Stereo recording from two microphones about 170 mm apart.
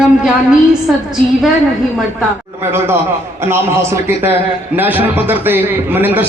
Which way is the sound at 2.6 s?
15° right (ahead or behind).